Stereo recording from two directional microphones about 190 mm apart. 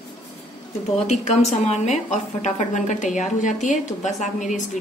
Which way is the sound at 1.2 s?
35° left (ahead or behind).